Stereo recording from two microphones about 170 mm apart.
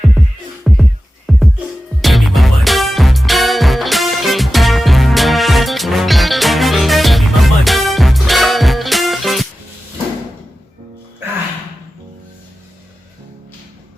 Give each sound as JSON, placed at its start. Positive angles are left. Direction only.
{"t": 0.2, "sound": "music", "side_deg": 0}